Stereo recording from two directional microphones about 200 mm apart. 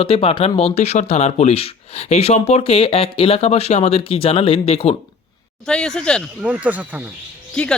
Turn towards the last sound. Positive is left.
turn(degrees=5)  # may be behind; listen again after turning